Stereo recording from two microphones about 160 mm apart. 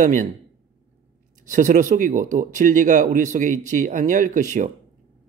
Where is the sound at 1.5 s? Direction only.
50° right (ahead or behind).